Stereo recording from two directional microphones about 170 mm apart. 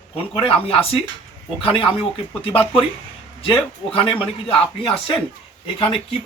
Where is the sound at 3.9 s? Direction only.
30° left (ahead or behind).